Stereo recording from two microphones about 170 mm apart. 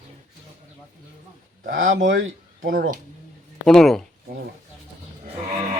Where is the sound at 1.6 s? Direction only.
55° right (ahead or behind).